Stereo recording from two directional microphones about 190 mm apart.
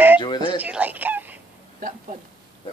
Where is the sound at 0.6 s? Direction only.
10° right (ahead or behind).